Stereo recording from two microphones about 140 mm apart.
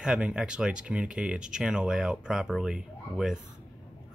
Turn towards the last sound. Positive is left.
turn(degrees=-5)  # may be behind; listen again after turning